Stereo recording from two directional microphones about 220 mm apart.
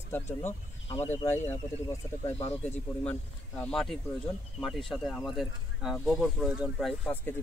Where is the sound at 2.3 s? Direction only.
30° left (ahead or behind).